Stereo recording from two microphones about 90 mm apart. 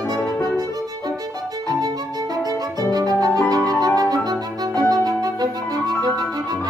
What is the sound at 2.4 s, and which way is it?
Music, 45° right (ahead or behind).